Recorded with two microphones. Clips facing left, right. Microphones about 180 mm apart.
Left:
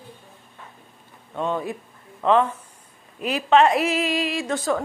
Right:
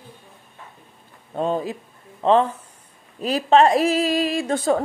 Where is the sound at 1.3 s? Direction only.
35° right (ahead or behind).